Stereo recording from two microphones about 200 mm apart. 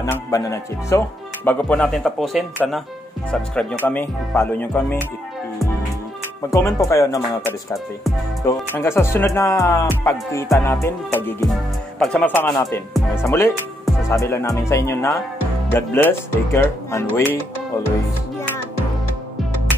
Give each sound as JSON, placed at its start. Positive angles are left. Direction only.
{"t": 0.0, "sound": "speech", "side_deg": 15}
{"t": 6.5, "sound": "speech", "side_deg": 15}